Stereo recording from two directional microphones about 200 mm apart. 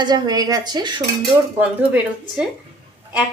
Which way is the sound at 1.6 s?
5° right (ahead or behind).